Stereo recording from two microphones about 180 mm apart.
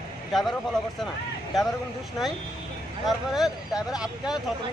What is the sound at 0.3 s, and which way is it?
Speech, centre (ahead or behind).